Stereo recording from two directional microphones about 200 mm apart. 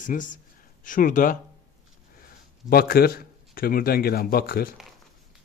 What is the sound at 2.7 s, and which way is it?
Speech, 50° left (ahead or behind).